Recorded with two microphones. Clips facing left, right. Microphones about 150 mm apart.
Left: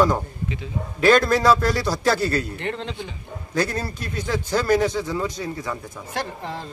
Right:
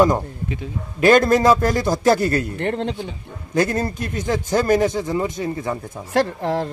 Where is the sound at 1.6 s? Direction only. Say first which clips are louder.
Right 3 dB; 45° right (ahead or behind).